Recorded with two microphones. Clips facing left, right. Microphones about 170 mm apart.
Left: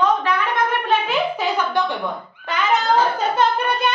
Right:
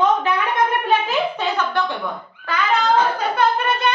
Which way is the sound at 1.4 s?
15° left (ahead or behind).